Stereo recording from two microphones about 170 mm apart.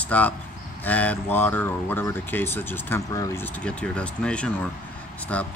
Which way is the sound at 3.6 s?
5° left (ahead or behind).